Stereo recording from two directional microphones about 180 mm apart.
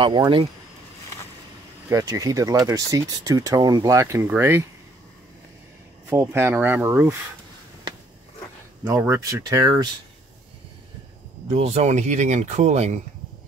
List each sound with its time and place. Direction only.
0.0 s speech: 25° right (ahead or behind)
1.9 s speech: 20° right (ahead or behind)
6.0 s speech: 15° right (ahead or behind)
7.9 s a sound: 25° right (ahead or behind)
8.8 s speech: 15° right (ahead or behind)
11.4 s speech: 35° right (ahead or behind)